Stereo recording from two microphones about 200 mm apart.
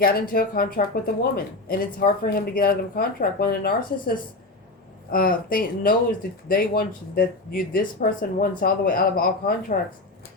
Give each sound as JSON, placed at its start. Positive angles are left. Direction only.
{"t": 0.0, "sound": "speech", "side_deg": 45}